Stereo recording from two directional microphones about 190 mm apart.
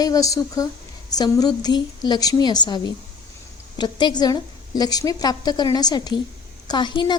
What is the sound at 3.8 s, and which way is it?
A woman's voice, 25° left (ahead or behind).